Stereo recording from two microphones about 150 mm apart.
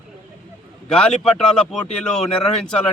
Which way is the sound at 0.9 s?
5° left (ahead or behind).